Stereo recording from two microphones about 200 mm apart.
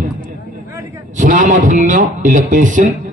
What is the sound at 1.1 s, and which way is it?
A man's voice, 40° right (ahead or behind).